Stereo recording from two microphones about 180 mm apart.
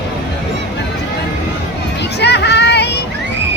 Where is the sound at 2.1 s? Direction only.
70° left (ahead or behind).